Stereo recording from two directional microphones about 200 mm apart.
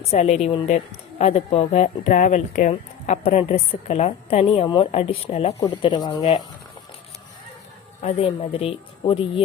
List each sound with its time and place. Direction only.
0.1 s a woman's voice: 35° left (ahead or behind)
5.5 s speech: 20° left (ahead or behind)
8.0 s speech: 30° left (ahead or behind)